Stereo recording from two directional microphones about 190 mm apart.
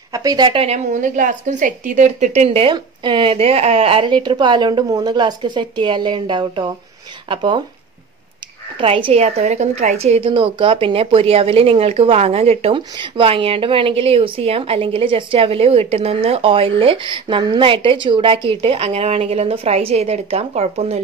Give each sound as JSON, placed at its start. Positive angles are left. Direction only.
{"t": 0.1, "sound": "a woman's voice", "side_deg": -20}
{"t": 8.7, "sound": "a woman's voice", "side_deg": -25}